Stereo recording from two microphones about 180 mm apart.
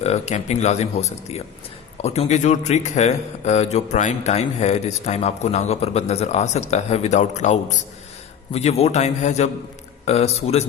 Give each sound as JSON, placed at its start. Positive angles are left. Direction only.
{"t": 0.0, "sound": "a man's voice", "side_deg": 40}